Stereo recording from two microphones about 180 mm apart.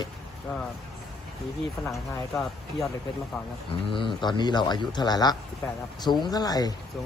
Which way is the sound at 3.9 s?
25° left (ahead or behind).